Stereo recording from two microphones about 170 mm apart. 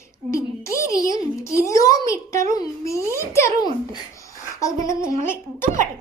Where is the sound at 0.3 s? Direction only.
15° left (ahead or behind).